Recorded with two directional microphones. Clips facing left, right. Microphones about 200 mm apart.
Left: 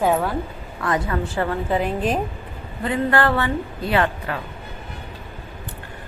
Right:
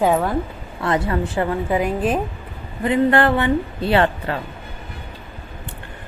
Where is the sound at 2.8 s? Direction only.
20° right (ahead or behind).